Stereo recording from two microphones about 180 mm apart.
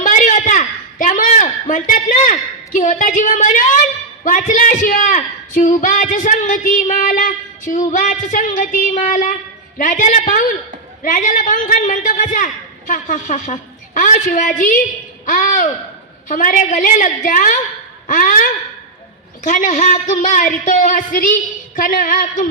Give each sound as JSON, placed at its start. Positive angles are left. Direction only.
{"t": 0.0, "sound": "a sound", "side_deg": 45}
{"t": 4.2, "sound": "a woman's voice", "side_deg": 45}
{"t": 19.5, "sound": "a woman's voice", "side_deg": 45}